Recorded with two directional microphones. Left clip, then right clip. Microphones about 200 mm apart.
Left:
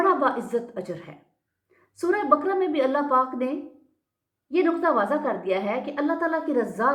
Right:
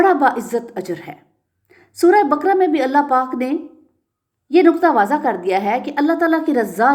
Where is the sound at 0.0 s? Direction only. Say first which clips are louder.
Right 8 dB; 45° right (ahead or behind).